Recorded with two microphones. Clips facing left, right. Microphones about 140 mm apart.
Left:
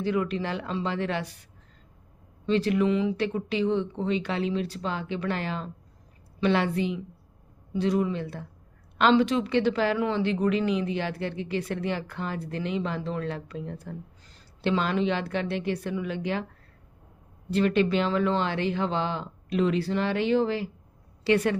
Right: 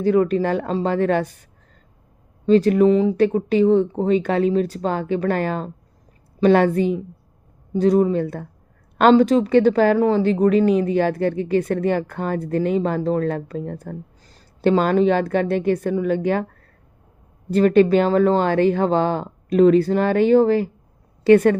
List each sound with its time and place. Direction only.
0.0 s a woman's voice: 45° right (ahead or behind)
2.5 s a woman's voice: 45° right (ahead or behind)
17.5 s a woman's voice: 45° right (ahead or behind)